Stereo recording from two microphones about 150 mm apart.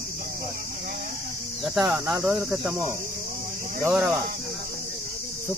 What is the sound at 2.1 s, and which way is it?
Cricket, 5° right (ahead or behind).